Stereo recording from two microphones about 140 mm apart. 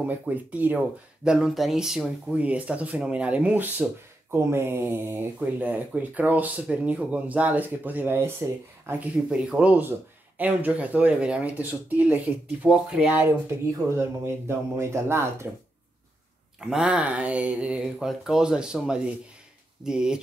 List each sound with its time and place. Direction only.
0.0 s a man's voice: 10° right (ahead or behind)
16.5 s speech: 5° right (ahead or behind)